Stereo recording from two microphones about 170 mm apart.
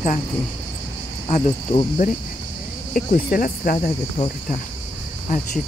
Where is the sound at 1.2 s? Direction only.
40° left (ahead or behind).